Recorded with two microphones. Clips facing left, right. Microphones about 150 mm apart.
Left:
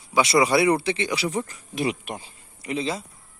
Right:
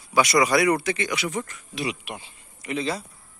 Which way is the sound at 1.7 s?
50° left (ahead or behind).